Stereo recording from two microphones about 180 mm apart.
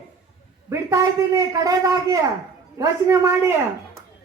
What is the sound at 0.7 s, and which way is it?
A man's voice, 20° right (ahead or behind).